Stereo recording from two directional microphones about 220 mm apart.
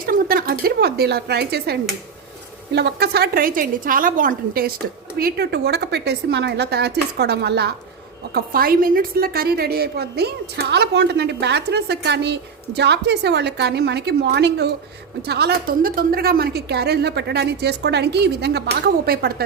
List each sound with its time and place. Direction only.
0.0 s a woman's voice: 40° right (ahead or behind)